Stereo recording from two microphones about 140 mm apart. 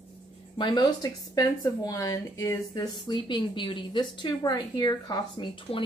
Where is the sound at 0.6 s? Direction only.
35° left (ahead or behind).